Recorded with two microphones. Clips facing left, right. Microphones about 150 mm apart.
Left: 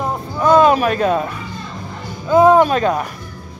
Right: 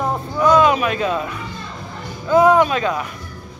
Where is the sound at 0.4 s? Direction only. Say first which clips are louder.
Left 3 dB; 35° left (ahead or behind).